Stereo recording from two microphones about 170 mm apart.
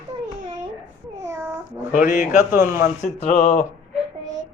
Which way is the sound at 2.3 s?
15° right (ahead or behind).